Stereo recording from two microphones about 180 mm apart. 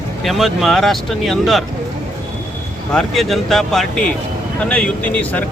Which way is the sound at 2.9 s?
Centre (ahead or behind).